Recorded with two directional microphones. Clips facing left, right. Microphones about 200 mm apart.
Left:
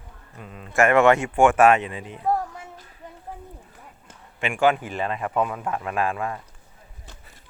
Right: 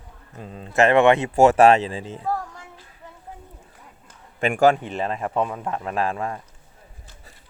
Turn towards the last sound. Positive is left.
turn(degrees=-30)  # may be behind; listen again after turning